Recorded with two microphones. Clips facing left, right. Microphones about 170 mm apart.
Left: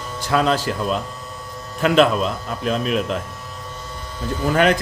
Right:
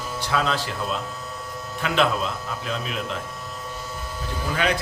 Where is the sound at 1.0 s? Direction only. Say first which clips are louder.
Even; centre (ahead or behind).